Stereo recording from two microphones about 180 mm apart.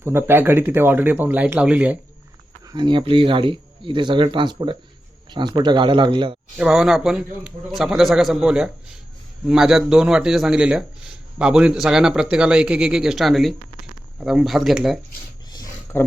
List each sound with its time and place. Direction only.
0.0 s speech: 15° right (ahead or behind)
2.6 s speech: 25° right (ahead or behind)
6.6 s a man's voice: 5° right (ahead or behind)
15.4 s a sound: 20° left (ahead or behind)